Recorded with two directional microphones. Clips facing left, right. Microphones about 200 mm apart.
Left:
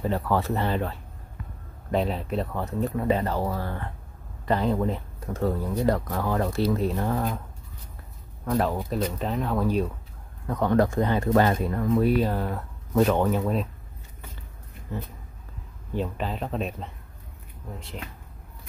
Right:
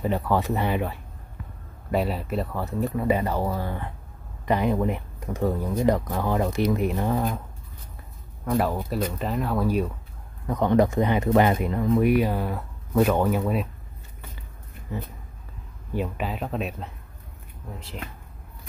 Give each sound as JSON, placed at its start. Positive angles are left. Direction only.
{"t": 0.0, "sound": "speech", "side_deg": -15}
{"t": 8.5, "sound": "speech", "side_deg": -5}
{"t": 15.9, "sound": "speech", "side_deg": -10}